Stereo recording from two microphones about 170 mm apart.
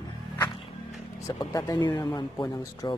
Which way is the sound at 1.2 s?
20° left (ahead or behind).